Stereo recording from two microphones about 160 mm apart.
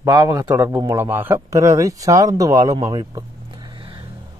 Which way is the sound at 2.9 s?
30° right (ahead or behind).